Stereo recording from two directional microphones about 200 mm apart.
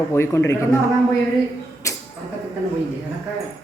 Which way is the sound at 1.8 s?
15° left (ahead or behind).